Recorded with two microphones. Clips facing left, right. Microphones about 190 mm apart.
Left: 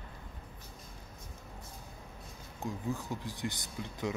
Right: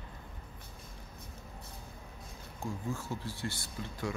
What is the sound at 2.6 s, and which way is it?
Speech, 15° left (ahead or behind).